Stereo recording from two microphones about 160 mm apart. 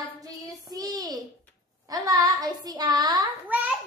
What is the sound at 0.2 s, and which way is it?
Child singing, 25° right (ahead or behind).